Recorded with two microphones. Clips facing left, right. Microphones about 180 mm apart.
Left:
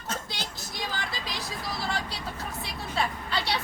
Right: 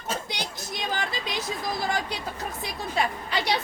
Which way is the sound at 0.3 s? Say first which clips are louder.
Right 4 dB; 20° right (ahead or behind).